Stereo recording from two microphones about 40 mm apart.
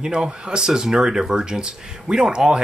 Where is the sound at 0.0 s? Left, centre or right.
Right.